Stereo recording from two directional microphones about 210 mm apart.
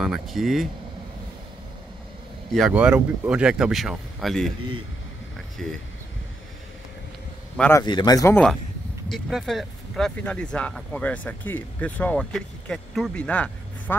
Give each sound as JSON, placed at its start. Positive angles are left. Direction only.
{"t": 0.0, "sound": "speech", "side_deg": 0}
{"t": 2.5, "sound": "speech", "side_deg": 0}
{"t": 5.6, "sound": "speech", "side_deg": 5}
{"t": 7.5, "sound": "a man's voice", "side_deg": 5}
{"t": 7.8, "sound": "speech", "side_deg": 20}
{"t": 9.1, "sound": "speech", "side_deg": 0}